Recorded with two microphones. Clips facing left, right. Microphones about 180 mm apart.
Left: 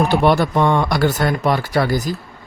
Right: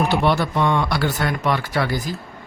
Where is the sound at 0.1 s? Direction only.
45° left (ahead or behind).